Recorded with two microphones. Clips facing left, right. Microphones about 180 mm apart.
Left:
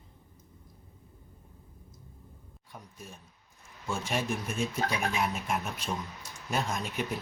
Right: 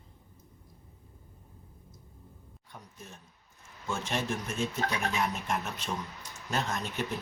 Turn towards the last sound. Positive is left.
turn(degrees=10)  # may be behind; listen again after turning